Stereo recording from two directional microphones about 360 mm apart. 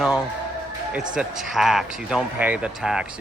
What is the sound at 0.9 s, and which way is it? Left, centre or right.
Speech, centre.